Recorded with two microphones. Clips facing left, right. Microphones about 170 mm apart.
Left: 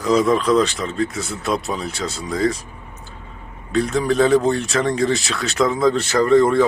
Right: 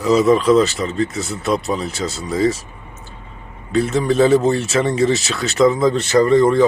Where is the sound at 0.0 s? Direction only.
5° right (ahead or behind).